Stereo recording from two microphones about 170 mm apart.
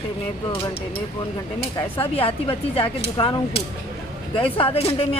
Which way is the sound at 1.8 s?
35° left (ahead or behind).